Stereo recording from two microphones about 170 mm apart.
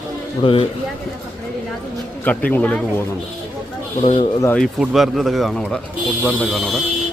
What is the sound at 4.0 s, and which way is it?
Speech, 35° left (ahead or behind).